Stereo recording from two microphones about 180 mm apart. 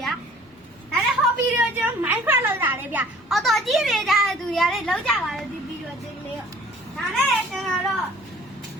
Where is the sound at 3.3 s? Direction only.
Centre (ahead or behind).